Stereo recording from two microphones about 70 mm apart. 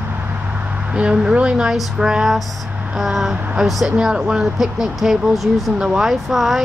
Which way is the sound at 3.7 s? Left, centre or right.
Centre.